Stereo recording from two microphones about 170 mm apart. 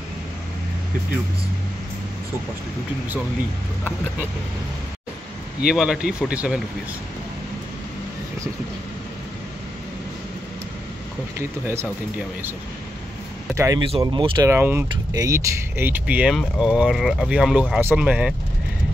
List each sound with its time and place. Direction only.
5.7 s speech: 5° right (ahead or behind)
11.3 s speech: 15° right (ahead or behind)
13.6 s speech: 20° right (ahead or behind)
14.5 s speech: 10° right (ahead or behind)